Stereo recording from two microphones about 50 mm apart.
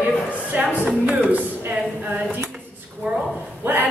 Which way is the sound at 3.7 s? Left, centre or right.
Right.